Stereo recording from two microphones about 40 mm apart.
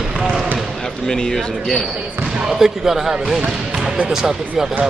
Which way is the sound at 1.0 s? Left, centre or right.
Centre.